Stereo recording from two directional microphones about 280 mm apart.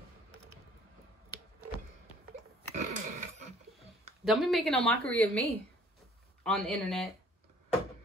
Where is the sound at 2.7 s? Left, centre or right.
Right.